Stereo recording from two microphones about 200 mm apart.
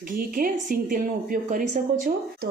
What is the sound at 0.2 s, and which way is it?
Speech, 45° right (ahead or behind).